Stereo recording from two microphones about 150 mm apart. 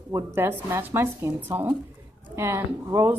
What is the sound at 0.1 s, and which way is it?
A woman's voice, 15° right (ahead or behind).